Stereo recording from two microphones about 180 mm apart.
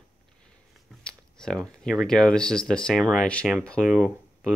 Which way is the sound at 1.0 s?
5° left (ahead or behind).